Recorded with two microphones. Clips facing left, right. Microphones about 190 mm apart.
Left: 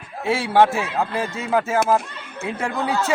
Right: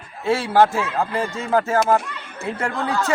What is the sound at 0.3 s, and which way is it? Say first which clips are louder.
A man's voice: even; 10° left (ahead or behind).